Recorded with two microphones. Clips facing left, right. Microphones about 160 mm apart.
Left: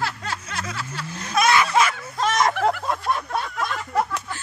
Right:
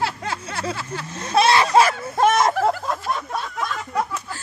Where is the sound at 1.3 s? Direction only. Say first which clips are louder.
Right 3 dB; 30° right (ahead or behind).